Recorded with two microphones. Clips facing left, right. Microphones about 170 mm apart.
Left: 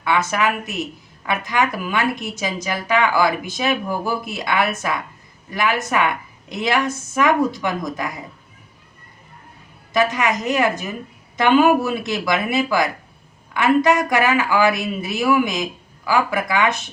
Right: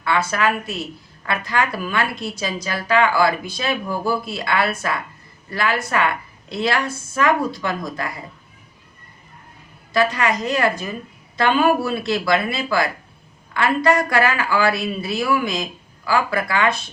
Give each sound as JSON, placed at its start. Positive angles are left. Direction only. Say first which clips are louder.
{"t": 0.0, "sound": "a woman's voice", "louder": "even", "side_deg": 15}
{"t": 9.9, "sound": "a woman's voice", "louder": "even", "side_deg": 20}